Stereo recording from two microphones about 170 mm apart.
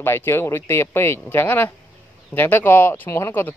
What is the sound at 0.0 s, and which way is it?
Speech, 15° left (ahead or behind).